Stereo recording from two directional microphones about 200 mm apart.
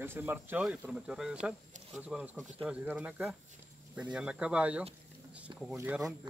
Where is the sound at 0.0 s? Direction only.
10° right (ahead or behind).